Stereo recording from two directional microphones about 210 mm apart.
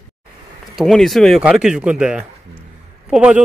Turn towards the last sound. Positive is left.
turn(degrees=-5)  # may be behind; listen again after turning